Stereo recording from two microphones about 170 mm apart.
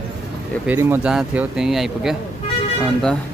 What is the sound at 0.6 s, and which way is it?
Speech, 10° right (ahead or behind).